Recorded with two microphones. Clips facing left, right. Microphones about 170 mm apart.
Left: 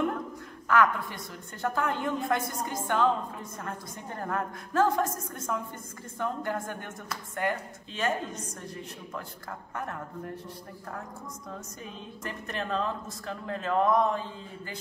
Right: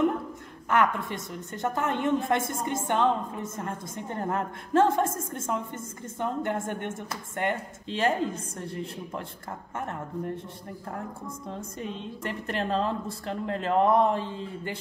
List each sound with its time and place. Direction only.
0.7 s a woman's voice: 25° right (ahead or behind)
12.2 s speech: 30° right (ahead or behind)